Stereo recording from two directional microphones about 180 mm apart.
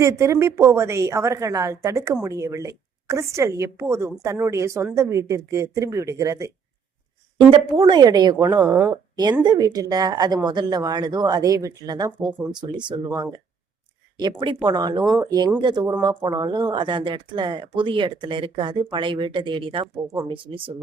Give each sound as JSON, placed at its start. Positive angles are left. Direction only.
{"t": 0.0, "sound": "a woman's voice", "side_deg": -15}
{"t": 7.3, "sound": "speech", "side_deg": -30}
{"t": 8.6, "sound": "speech", "side_deg": -10}